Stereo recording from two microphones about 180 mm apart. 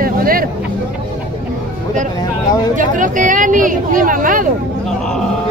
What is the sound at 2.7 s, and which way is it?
Speech, 45° right (ahead or behind).